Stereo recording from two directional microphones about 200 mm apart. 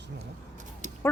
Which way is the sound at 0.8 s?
35° right (ahead or behind).